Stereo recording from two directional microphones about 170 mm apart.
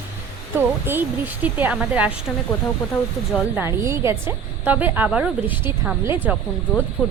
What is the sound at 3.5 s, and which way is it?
A woman's voice, 15° right (ahead or behind).